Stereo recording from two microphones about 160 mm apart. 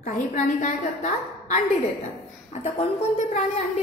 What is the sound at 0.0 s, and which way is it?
A woman's voice, 50° left (ahead or behind).